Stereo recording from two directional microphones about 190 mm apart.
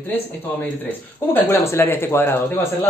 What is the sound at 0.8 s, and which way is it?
Speech, 10° left (ahead or behind).